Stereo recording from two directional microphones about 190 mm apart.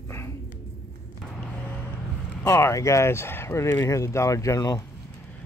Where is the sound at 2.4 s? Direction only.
15° left (ahead or behind).